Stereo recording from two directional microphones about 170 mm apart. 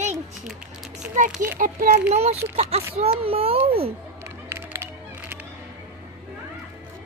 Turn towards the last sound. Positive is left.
turn(degrees=-15)  # may be behind; listen again after turning